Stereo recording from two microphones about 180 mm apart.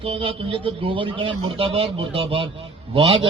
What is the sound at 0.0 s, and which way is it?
A man's voice, 30° right (ahead or behind).